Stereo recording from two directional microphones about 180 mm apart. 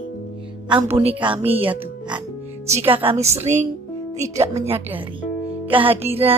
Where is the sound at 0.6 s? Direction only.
30° right (ahead or behind).